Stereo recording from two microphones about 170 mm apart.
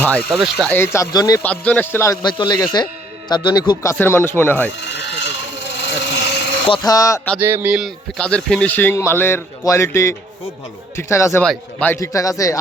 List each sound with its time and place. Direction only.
0.0 s speech: 5° left (ahead or behind)
0.8 s a man's voice: 15° left (ahead or behind)
2.2 s speech: 25° left (ahead or behind)
3.9 s a man's voice: 10° left (ahead or behind)
5.0 s a sound: 90° left
6.7 s speech: 20° left (ahead or behind)
7.3 s a man's voice: 10° right (ahead or behind); by 12.5 s 20° left (ahead or behind)